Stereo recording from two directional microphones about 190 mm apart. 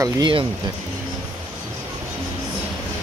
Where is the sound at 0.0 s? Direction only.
25° right (ahead or behind).